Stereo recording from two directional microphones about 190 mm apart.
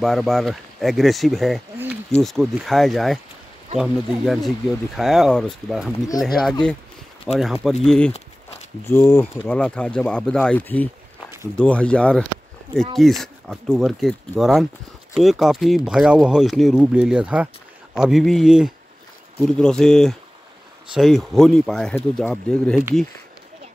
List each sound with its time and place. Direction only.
0.0 s speech: centre (ahead or behind)
7.3 s speech: centre (ahead or behind)
8.1 s a sound: 35° left (ahead or behind)
8.8 s speech: 15° left (ahead or behind)